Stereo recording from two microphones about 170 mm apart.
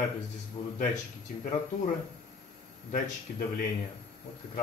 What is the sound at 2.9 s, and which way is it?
Speech, 60° left (ahead or behind).